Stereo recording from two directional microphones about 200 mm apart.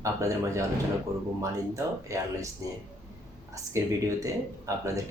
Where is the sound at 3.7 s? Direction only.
15° right (ahead or behind).